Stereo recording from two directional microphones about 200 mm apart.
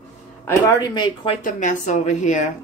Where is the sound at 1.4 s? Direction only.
40° left (ahead or behind).